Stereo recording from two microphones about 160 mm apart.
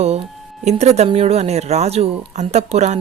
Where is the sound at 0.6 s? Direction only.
45° right (ahead or behind).